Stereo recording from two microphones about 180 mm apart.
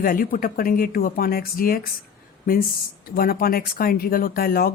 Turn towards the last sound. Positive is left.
turn(degrees=55)  # may be behind; listen again after turning